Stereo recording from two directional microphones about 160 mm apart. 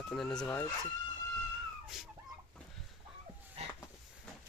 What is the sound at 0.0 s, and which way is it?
Speech, 5° left (ahead or behind).